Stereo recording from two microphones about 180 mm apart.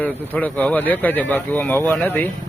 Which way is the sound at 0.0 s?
10° left (ahead or behind).